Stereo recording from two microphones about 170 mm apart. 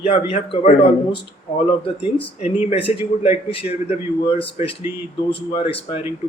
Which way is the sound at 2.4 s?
40° left (ahead or behind).